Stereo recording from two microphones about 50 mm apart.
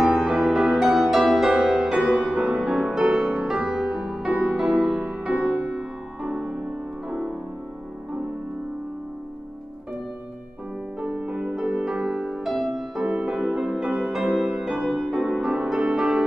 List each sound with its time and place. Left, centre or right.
0.1 s music: centre
11.0 s music: right